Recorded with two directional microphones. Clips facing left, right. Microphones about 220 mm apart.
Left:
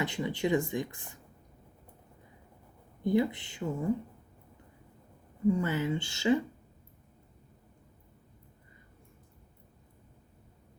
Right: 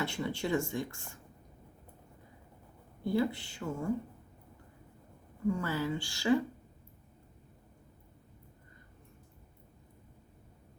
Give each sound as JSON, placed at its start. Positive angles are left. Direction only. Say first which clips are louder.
{"t": 0.0, "sound": "speech", "louder": "left 3 dB", "side_deg": 15}
{"t": 3.0, "sound": "speech", "louder": "left 3 dB", "side_deg": 20}
{"t": 5.5, "sound": "speech", "louder": "left 4 dB", "side_deg": 20}